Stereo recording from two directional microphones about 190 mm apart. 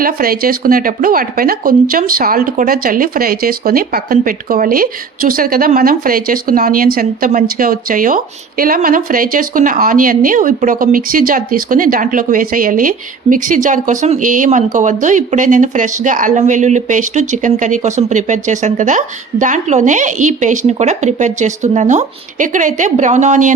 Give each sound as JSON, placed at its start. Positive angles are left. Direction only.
{"t": 0.0, "sound": "speech", "side_deg": -50}